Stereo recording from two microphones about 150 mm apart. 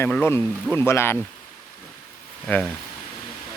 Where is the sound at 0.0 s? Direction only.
15° left (ahead or behind).